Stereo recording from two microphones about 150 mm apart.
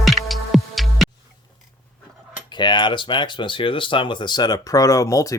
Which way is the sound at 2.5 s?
30° left (ahead or behind).